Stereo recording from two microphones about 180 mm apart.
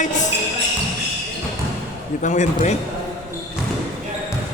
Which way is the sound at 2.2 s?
40° left (ahead or behind).